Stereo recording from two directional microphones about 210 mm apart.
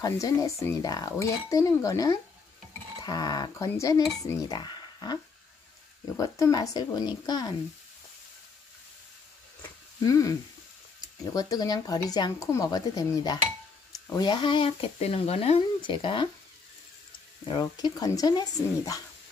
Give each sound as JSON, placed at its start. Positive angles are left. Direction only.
{"t": 0.0, "sound": "speech", "side_deg": 15}
{"t": 9.6, "sound": "a sound", "side_deg": 15}
{"t": 11.0, "sound": "speech", "side_deg": 15}
{"t": 17.5, "sound": "speech", "side_deg": 20}